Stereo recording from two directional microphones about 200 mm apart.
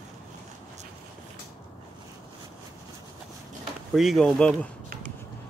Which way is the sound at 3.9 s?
Centre (ahead or behind).